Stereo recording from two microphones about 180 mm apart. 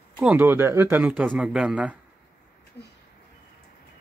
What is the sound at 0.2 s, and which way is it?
A man's voice, 10° right (ahead or behind).